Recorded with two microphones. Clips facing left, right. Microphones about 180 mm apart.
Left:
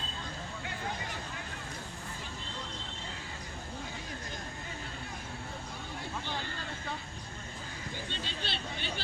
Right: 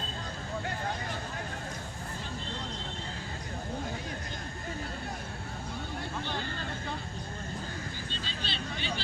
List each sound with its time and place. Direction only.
8.2 s vehicle: 60° left (ahead or behind)